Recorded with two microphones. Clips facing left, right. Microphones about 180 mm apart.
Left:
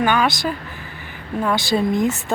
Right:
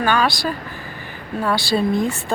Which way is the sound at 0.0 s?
20° left (ahead or behind).